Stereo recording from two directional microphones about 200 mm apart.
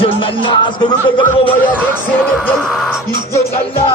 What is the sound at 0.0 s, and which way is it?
Speech, 25° left (ahead or behind).